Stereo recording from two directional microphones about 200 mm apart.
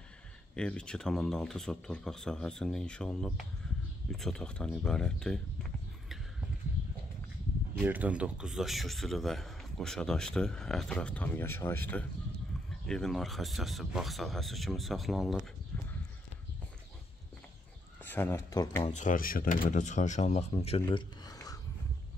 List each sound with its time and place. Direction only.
0.6 s a man's voice: 5° left (ahead or behind)
7.8 s a man's voice: 10° right (ahead or behind)
15.7 s horse: 10° left (ahead or behind)
18.0 s speech: 10° left (ahead or behind)
18.9 s speech: 40° left (ahead or behind)
20.9 s a sound: 20° left (ahead or behind)